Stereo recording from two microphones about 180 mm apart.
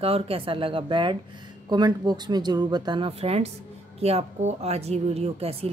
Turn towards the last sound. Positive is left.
turn(degrees=-35)  # may be behind; listen again after turning